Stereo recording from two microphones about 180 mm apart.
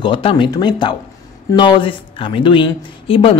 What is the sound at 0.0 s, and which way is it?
Speech, 30° left (ahead or behind).